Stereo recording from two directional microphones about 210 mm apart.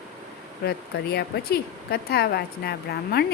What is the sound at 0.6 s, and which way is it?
Speech, 50° left (ahead or behind).